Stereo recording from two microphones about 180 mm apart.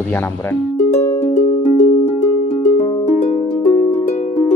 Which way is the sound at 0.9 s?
40° left (ahead or behind).